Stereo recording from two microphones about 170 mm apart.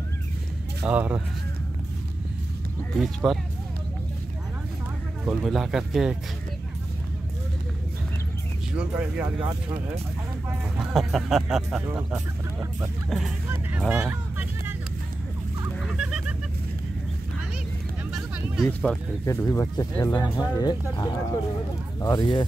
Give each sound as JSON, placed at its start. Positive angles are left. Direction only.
{"t": 0.8, "sound": "speech", "side_deg": -5}
{"t": 3.3, "sound": "speech", "side_deg": 0}
{"t": 5.2, "sound": "speech", "side_deg": 0}
{"t": 8.7, "sound": "speech", "side_deg": -5}
{"t": 10.8, "sound": "speech", "side_deg": 0}
{"t": 13.5, "sound": "speech", "side_deg": -10}
{"t": 15.8, "sound": "fowl", "side_deg": -5}
{"t": 18.7, "sound": "speech", "side_deg": 10}